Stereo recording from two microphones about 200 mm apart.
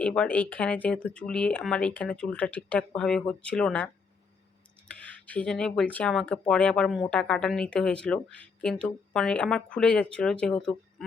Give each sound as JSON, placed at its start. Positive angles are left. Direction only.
{"t": 0.0, "sound": "speech", "side_deg": 5}
{"t": 4.9, "sound": "speech", "side_deg": 5}